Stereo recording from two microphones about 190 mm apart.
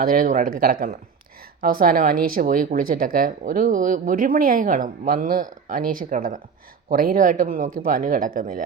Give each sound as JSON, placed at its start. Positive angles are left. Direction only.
{"t": 0.0, "sound": "speech", "side_deg": -45}